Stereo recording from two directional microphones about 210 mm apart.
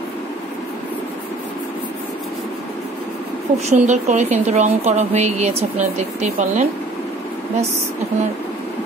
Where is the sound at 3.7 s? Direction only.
35° right (ahead or behind).